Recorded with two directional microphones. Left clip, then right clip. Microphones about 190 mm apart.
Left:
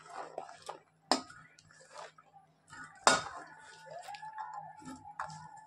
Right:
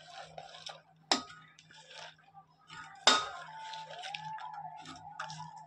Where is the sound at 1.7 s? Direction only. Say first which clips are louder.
Right 4 dB; centre (ahead or behind).